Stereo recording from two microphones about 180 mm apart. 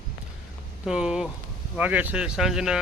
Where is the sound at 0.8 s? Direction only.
5° right (ahead or behind).